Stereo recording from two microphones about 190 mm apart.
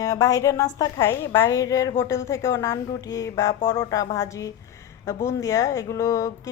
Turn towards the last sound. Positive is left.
turn(degrees=15)  # may be behind; listen again after turning